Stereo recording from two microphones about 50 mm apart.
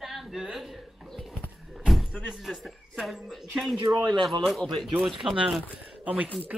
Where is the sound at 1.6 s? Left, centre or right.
Centre.